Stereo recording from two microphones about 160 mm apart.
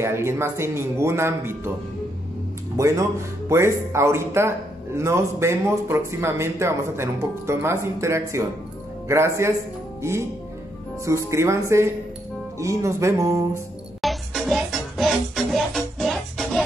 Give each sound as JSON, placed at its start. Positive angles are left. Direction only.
{"t": 0.0, "sound": "speech", "side_deg": -15}
{"t": 2.8, "sound": "speech", "side_deg": -20}
{"t": 11.1, "sound": "speech", "side_deg": -20}
{"t": 12.5, "sound": "speech", "side_deg": -20}
{"t": 14.0, "sound": "music", "side_deg": 0}